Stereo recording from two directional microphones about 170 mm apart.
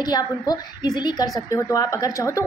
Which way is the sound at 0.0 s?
25° left (ahead or behind).